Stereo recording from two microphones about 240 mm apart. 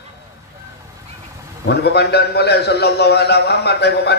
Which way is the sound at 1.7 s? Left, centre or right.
Left.